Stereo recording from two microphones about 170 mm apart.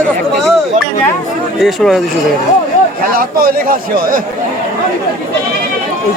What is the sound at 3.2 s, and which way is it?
Speech, 60° right (ahead or behind).